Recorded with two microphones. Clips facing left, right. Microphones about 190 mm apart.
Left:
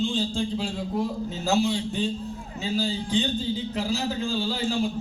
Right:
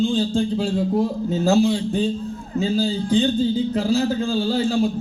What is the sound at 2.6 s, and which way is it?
A man's voice, 50° right (ahead or behind).